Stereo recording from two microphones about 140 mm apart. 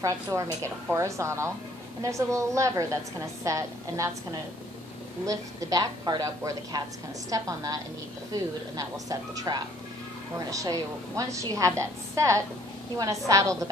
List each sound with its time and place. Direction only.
0.0 s a woman's voice: 20° right (ahead or behind)